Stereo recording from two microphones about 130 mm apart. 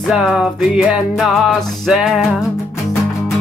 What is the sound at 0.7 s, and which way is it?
Music, 5° right (ahead or behind).